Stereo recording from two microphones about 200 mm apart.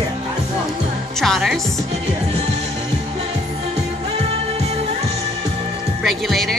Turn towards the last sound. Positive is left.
turn(degrees=0)  # may be behind; listen again after turning